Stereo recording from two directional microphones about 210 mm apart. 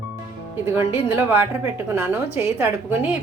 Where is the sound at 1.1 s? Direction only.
10° right (ahead or behind).